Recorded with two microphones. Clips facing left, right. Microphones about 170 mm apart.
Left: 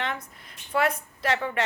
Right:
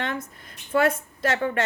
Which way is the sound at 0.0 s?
45° right (ahead or behind).